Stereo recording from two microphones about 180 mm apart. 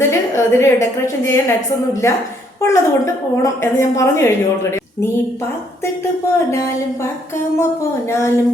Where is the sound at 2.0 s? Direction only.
15° left (ahead or behind).